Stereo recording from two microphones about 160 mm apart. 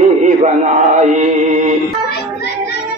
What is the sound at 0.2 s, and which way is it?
Chant, 45° right (ahead or behind).